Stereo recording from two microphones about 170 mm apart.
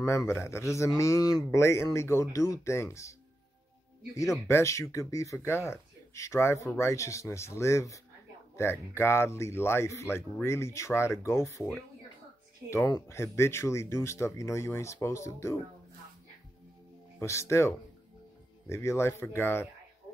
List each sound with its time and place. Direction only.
0.0 s speech: 15° left (ahead or behind)
17.2 s speech: 15° left (ahead or behind)